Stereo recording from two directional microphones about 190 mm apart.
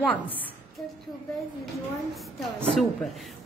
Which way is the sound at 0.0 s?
10° left (ahead or behind).